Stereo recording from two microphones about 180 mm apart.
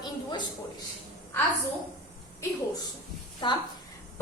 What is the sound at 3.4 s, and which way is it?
Speech, 25° left (ahead or behind).